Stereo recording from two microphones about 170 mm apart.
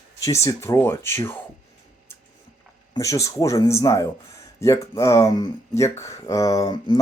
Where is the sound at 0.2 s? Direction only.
15° left (ahead or behind).